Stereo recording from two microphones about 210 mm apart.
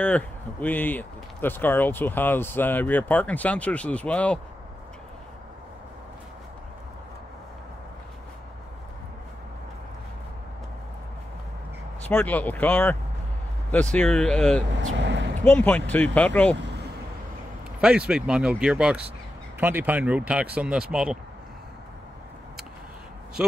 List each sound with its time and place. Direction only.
0.0 s speech: 5° left (ahead or behind)
12.0 s speech: 10° left (ahead or behind)
13.9 s speech: 5° left (ahead or behind)
14.9 s speech: 60° right (ahead or behind)
15.4 s speech: 10° left (ahead or behind)
17.7 s speech: 5° right (ahead or behind)